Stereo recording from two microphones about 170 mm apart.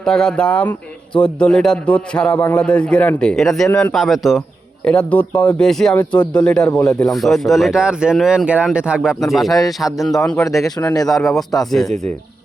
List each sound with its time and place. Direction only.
0.0 s speech: 5° left (ahead or behind)
3.9 s speech: centre (ahead or behind)
10.8 s speech: 20° left (ahead or behind)
11.1 s speech: centre (ahead or behind)